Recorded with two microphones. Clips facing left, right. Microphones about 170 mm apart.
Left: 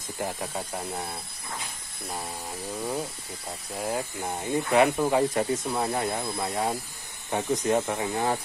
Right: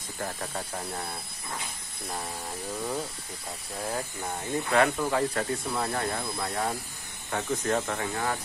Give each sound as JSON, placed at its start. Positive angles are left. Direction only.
{"t": 0.2, "sound": "speech", "side_deg": 10}
{"t": 3.8, "sound": "speech", "side_deg": 15}